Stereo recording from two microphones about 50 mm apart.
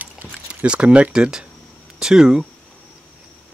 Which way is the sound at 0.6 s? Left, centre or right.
Centre.